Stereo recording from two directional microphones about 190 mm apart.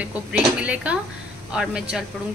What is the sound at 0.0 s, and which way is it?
A woman's voice, 5° right (ahead or behind).